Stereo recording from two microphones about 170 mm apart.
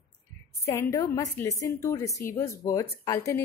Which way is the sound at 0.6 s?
15° left (ahead or behind).